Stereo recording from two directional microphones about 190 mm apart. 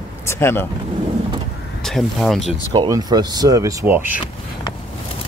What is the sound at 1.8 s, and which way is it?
Speech, centre (ahead or behind).